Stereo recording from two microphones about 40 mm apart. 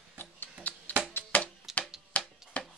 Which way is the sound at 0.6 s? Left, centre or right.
Left.